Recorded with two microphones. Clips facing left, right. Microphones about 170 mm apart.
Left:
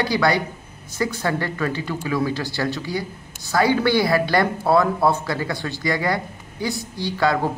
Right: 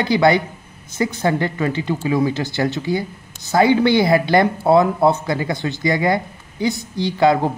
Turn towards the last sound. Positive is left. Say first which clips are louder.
# right 5 dB
turn(degrees=-20)  # may be behind; listen again after turning